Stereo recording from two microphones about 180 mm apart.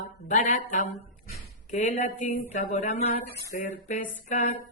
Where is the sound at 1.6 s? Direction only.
40° left (ahead or behind).